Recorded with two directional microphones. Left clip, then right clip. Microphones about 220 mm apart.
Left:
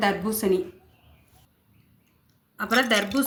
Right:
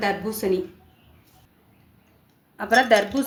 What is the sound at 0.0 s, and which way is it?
Speech, 35° left (ahead or behind).